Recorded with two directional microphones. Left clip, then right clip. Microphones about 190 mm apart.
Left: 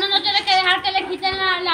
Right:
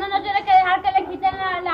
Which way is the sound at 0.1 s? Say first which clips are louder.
Right 4 dB; 10° right (ahead or behind).